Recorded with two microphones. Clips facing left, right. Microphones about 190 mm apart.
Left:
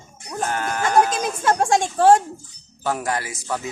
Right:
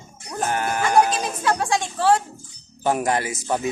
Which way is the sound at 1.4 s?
45° left (ahead or behind).